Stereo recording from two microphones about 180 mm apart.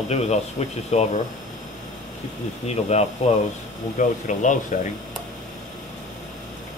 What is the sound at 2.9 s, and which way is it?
Speech, 35° left (ahead or behind).